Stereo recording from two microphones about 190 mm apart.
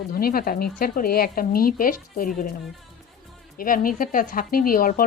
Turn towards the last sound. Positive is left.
turn(degrees=50)  # may be behind; listen again after turning